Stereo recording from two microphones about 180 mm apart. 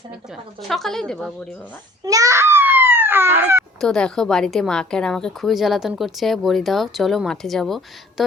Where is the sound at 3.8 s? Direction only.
5° left (ahead or behind).